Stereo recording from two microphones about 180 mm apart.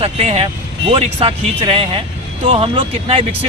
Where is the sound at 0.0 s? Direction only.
35° right (ahead or behind).